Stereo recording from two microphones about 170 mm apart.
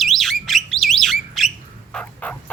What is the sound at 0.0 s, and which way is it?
Bird, centre (ahead or behind).